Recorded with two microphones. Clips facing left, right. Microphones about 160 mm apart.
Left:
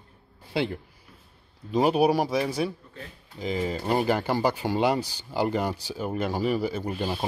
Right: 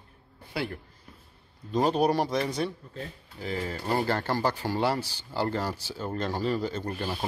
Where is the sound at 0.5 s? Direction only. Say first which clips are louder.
Left 5 dB; 20° left (ahead or behind).